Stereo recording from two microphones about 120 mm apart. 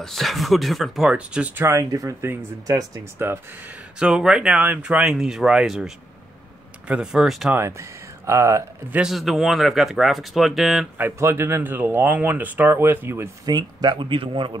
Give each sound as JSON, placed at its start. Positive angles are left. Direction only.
{"t": 0.0, "sound": "speech", "side_deg": 0}
{"t": 4.0, "sound": "speech", "side_deg": -5}
{"t": 7.5, "sound": "speech", "side_deg": -25}
{"t": 8.9, "sound": "speech", "side_deg": -5}
{"t": 11.0, "sound": "speech", "side_deg": -20}
{"t": 13.5, "sound": "speech", "side_deg": -35}